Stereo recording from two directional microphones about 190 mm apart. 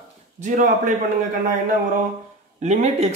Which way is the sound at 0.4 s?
40° right (ahead or behind).